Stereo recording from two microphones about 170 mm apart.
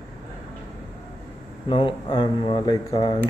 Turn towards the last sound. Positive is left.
turn(degrees=30)  # may be behind; listen again after turning